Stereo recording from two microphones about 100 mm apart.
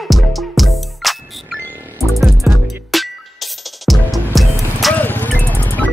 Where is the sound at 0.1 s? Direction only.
Centre (ahead or behind).